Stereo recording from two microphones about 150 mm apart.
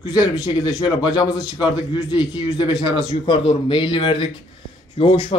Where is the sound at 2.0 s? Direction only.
30° left (ahead or behind).